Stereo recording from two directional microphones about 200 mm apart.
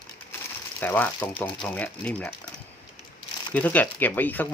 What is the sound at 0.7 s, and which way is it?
Speech, 10° left (ahead or behind).